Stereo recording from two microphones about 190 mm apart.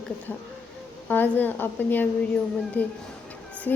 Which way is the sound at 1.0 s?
10° left (ahead or behind).